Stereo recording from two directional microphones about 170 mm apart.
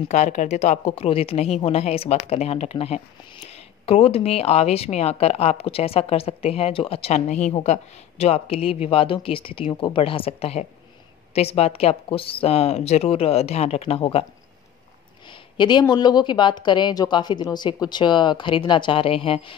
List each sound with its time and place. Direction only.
0.1 s speech: 45° left (ahead or behind)
15.2 s a sound: 25° left (ahead or behind)
15.9 s speech: 25° left (ahead or behind)